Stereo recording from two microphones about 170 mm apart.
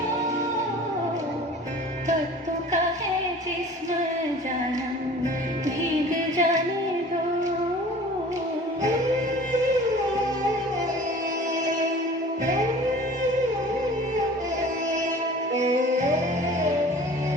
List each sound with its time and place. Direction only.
5.6 s music: 45° right (ahead or behind)
15.5 s music: 45° right (ahead or behind)